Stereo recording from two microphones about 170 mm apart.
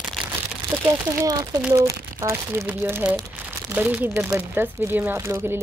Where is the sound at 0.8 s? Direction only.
20° right (ahead or behind).